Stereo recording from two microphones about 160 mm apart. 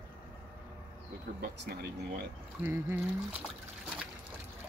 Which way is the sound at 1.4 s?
70° right (ahead or behind).